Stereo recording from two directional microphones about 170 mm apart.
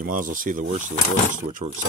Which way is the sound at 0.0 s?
55° right (ahead or behind).